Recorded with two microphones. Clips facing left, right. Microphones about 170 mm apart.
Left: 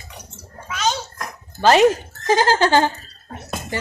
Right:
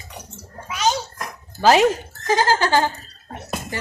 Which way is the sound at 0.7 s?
10° right (ahead or behind).